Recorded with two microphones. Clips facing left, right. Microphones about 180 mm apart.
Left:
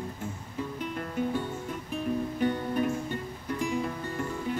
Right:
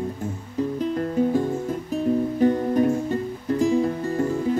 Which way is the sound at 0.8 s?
35° right (ahead or behind).